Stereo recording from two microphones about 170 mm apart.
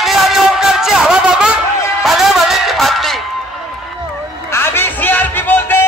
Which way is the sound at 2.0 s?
Centre (ahead or behind).